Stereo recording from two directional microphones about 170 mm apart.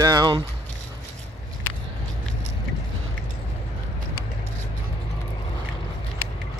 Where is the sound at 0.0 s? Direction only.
20° right (ahead or behind).